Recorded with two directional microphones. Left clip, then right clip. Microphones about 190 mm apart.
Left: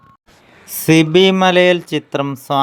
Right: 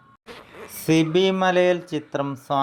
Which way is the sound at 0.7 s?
35° left (ahead or behind).